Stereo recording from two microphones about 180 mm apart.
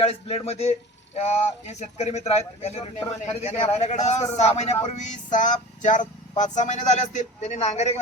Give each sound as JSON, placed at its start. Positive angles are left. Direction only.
{"t": 0.0, "sound": "speech", "side_deg": 35}